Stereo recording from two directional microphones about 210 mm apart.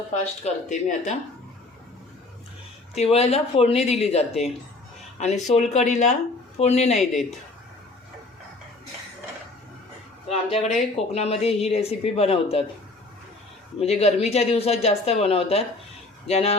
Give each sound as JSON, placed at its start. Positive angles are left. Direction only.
{"t": 0.4, "sound": "speech", "side_deg": 35}
{"t": 2.9, "sound": "speech", "side_deg": 30}
{"t": 6.9, "sound": "speech", "side_deg": 0}
{"t": 10.2, "sound": "speech", "side_deg": 30}
{"t": 13.7, "sound": "speech", "side_deg": 30}